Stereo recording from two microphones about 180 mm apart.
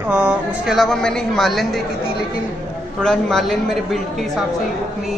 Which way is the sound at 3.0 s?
5° left (ahead or behind).